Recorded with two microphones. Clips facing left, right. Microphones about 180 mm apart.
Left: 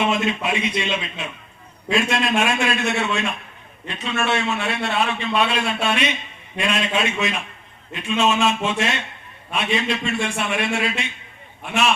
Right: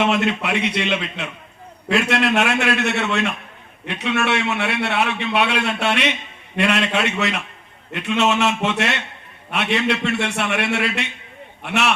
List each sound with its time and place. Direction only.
0.0 s a man's voice: 70° right (ahead or behind)